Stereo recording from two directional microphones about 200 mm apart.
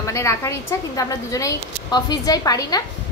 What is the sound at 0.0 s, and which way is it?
A woman's voice, 15° left (ahead or behind).